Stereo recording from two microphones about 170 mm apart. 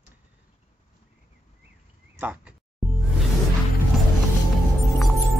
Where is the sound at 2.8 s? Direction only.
Centre (ahead or behind).